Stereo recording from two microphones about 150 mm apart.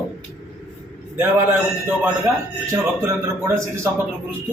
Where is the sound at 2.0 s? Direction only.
15° right (ahead or behind).